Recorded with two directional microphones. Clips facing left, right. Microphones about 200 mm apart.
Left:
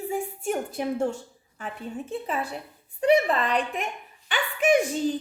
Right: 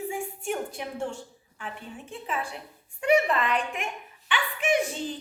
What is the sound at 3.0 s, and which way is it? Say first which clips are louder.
Speech: left 2 dB; 35° left (ahead or behind).